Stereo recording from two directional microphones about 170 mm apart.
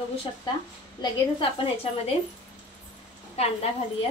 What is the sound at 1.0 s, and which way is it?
Speech, 25° left (ahead or behind).